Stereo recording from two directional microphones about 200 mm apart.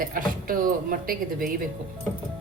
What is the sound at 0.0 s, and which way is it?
A woman's voice, 45° right (ahead or behind).